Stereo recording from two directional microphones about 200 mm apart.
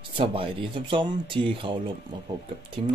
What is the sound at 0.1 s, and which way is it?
Speech, 25° right (ahead or behind).